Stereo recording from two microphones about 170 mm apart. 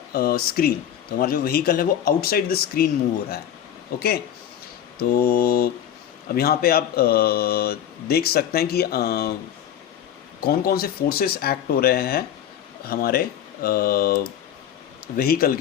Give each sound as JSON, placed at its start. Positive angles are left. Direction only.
{"t": 0.1, "sound": "speech", "side_deg": 65}
{"t": 4.9, "sound": "speech", "side_deg": 60}
{"t": 10.4, "sound": "speech", "side_deg": 65}